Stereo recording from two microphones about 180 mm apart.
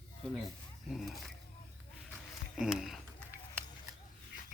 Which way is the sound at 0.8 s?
Centre (ahead or behind).